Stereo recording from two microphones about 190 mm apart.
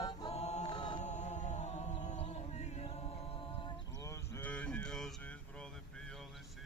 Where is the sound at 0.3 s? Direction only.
35° left (ahead or behind).